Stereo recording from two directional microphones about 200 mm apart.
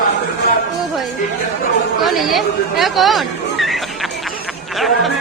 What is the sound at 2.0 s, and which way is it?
Speech, centre (ahead or behind).